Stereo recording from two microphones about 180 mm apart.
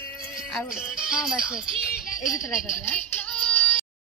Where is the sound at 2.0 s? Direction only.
45° left (ahead or behind).